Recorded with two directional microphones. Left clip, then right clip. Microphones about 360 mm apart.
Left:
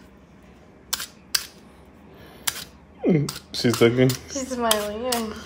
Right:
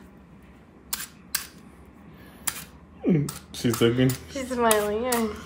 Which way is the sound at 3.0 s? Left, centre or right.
Centre.